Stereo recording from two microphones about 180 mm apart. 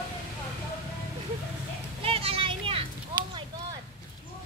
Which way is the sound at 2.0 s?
35° right (ahead or behind).